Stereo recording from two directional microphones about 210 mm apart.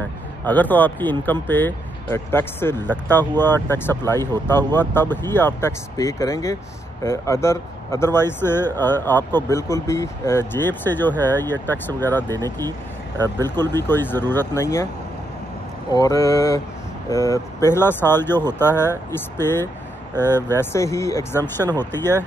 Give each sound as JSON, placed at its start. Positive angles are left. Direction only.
{"t": 0.5, "sound": "speech", "side_deg": 10}
{"t": 12.3, "sound": "speech", "side_deg": -15}
{"t": 13.7, "sound": "speech", "side_deg": 10}
{"t": 15.9, "sound": "speech", "side_deg": 15}